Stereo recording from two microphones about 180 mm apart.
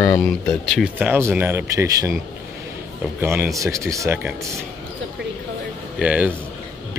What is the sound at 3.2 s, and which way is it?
Speech, 15° right (ahead or behind).